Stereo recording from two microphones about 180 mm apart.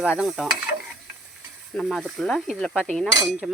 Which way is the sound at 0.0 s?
5° right (ahead or behind).